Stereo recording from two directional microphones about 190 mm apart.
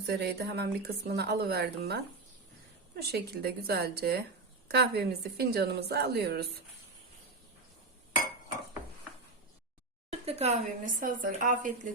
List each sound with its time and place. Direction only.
0.0 s speech: 60° right (ahead or behind)
10.1 s speech: 35° right (ahead or behind)